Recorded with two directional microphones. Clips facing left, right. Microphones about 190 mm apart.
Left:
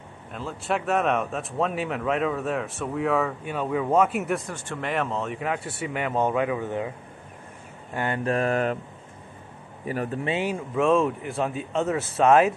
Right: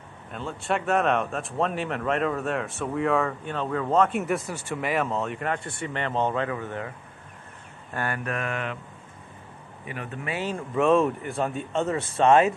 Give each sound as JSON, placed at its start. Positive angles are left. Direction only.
{"t": 0.3, "sound": "speech", "side_deg": 0}
{"t": 4.5, "sound": "speech", "side_deg": -5}
{"t": 7.9, "sound": "a sound", "side_deg": 20}
{"t": 9.8, "sound": "a sound", "side_deg": 40}
{"t": 10.2, "sound": "speech", "side_deg": 20}
{"t": 10.7, "sound": "speech", "side_deg": 0}